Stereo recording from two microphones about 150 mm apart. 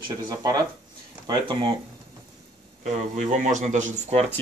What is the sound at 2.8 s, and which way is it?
Speech, 50° right (ahead or behind).